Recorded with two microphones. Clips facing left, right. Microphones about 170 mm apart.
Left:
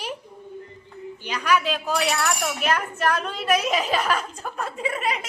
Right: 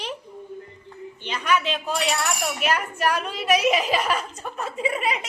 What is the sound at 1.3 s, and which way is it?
A woman's voice, centre (ahead or behind).